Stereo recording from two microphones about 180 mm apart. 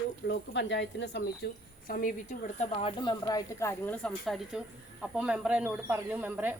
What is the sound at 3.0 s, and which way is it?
A woman's voice, 20° left (ahead or behind).